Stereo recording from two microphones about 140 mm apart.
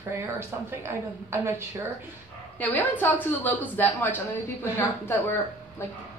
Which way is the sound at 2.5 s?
10° left (ahead or behind).